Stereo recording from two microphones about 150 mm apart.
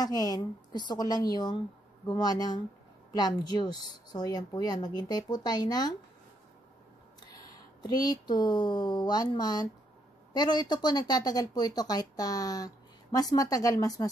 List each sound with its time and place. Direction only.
0.0 s speech: 25° left (ahead or behind)
7.8 s speech: 25° left (ahead or behind)